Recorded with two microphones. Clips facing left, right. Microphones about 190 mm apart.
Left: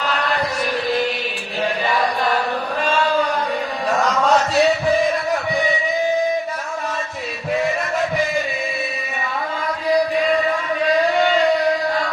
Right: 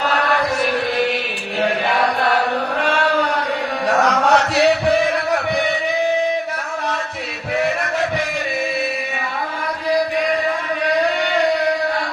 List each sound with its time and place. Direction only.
1.6 s chant: 65° right (ahead or behind)
2.8 s a sound: 65° right (ahead or behind)
3.8 s chant: 70° right (ahead or behind)